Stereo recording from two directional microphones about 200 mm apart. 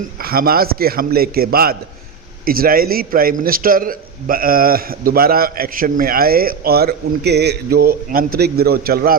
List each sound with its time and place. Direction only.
0.2 s a man's voice: 50° right (ahead or behind)